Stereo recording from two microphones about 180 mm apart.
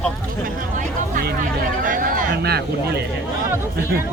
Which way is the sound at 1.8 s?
50° right (ahead or behind).